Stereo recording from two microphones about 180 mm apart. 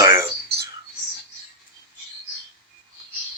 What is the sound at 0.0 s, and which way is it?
Whispering, 15° right (ahead or behind).